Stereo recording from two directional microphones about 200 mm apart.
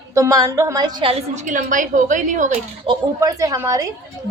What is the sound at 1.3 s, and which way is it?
A woman's voice, 35° right (ahead or behind).